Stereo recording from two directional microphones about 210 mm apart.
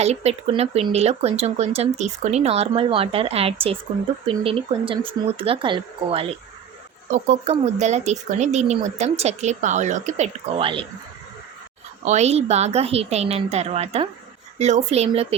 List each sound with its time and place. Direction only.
0.0 s speech: 30° right (ahead or behind)
12.0 s speech: 30° right (ahead or behind)